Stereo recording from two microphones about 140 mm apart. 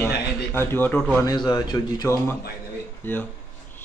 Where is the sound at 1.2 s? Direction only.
30° left (ahead or behind).